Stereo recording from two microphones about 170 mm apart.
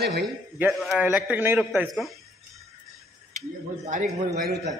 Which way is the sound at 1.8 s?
Centre (ahead or behind).